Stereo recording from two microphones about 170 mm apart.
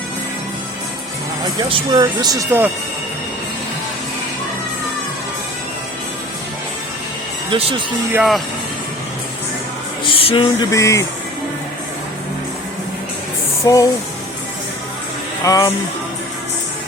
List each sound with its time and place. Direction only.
1.7 s speech: 25° right (ahead or behind)
7.5 s speech: 30° right (ahead or behind)
8.1 s speech: centre (ahead or behind)
10.0 s speech: 30° left (ahead or behind)
10.7 s speech: 20° left (ahead or behind)
13.7 s speech: 20° left (ahead or behind)
15.4 s speech: 20° left (ahead or behind)